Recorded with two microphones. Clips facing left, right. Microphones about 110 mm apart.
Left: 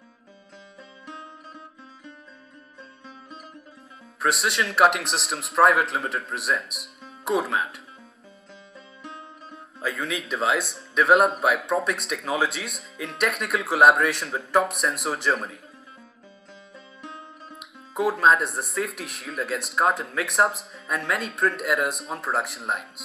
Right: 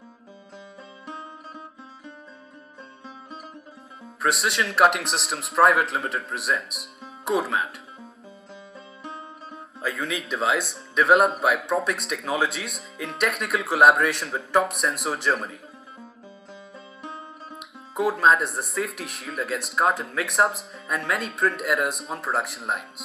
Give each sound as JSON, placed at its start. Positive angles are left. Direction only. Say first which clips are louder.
{"t": 1.0, "sound": "music", "louder": "right 3 dB", "side_deg": -35}
{"t": 4.2, "sound": "speech", "louder": "even", "side_deg": 0}
{"t": 8.7, "sound": "music", "louder": "right 2 dB", "side_deg": -35}
{"t": 9.8, "sound": "speech", "louder": "even", "side_deg": 0}
{"t": 16.7, "sound": "music", "louder": "right 2 dB", "side_deg": -35}
{"t": 17.6, "sound": "speech", "louder": "even", "side_deg": 0}